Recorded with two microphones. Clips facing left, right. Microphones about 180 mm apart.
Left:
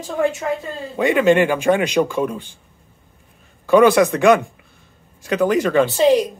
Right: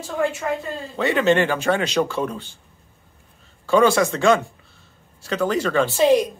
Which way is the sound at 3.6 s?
15° left (ahead or behind).